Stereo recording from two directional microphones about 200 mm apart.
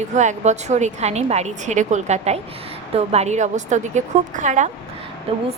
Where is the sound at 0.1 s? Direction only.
35° right (ahead or behind).